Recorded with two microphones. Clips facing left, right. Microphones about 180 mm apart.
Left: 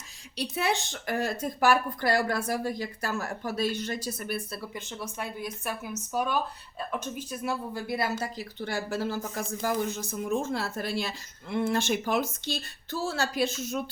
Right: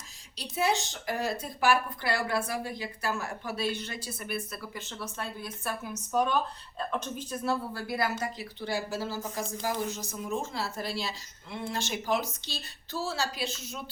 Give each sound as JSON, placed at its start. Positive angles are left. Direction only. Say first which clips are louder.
{"t": 0.5, "sound": "speech", "louder": "right 2 dB", "side_deg": 60}
{"t": 4.7, "sound": "speech", "louder": "left 2 dB", "side_deg": 15}
{"t": 8.6, "sound": "speech", "louder": "left 2 dB", "side_deg": 55}